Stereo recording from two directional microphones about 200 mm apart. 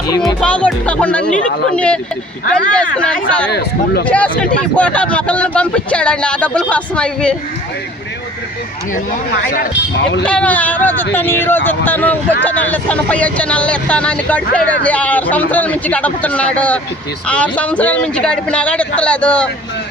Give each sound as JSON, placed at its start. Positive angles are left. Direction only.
{"t": 0.3, "sound": "speech", "side_deg": 5}
{"t": 1.2, "sound": "speech", "side_deg": 40}
{"t": 1.7, "sound": "speech", "side_deg": 5}
{"t": 10.2, "sound": "speech", "side_deg": 5}